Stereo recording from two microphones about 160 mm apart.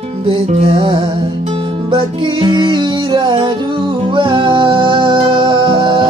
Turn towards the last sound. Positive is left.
turn(degrees=-30)  # may be behind; listen again after turning